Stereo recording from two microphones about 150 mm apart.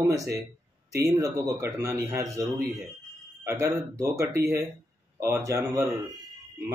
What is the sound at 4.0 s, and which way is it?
Speech, 20° right (ahead or behind).